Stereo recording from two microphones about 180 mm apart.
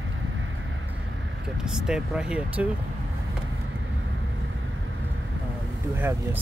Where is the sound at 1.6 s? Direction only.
5° right (ahead or behind).